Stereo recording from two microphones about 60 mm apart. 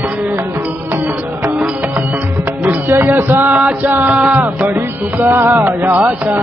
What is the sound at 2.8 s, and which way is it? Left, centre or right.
Music, right.